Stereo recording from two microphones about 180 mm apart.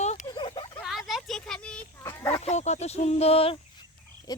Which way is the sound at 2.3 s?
35° left (ahead or behind).